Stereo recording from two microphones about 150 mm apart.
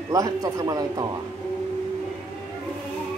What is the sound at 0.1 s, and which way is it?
Speech, 25° right (ahead or behind).